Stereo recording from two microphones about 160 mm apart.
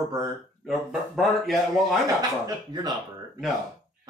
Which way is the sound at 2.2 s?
25° right (ahead or behind).